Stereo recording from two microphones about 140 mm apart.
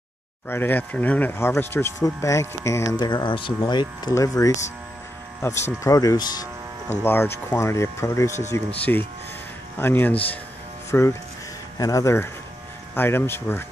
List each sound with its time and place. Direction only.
0.5 s speech: 15° left (ahead or behind); by 4.1 s 30° left (ahead or behind)
4.1 s speech: 20° left (ahead or behind)